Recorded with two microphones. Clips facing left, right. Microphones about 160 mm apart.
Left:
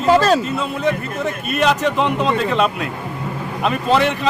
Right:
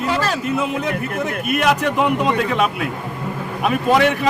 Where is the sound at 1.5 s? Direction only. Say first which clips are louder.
Left 1 dB; 10° right (ahead or behind).